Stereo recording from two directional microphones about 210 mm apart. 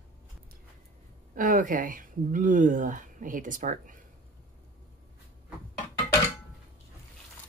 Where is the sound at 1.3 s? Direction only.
40° right (ahead or behind).